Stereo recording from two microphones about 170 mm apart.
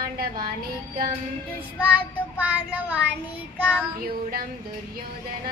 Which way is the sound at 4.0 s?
60° right (ahead or behind).